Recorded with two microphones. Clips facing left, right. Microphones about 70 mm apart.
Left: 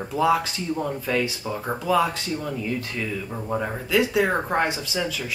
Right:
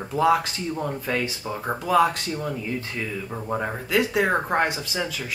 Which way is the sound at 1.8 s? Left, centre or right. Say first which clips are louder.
Right 2 dB; right.